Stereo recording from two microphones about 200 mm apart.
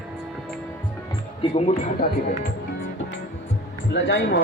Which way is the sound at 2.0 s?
50° left (ahead or behind).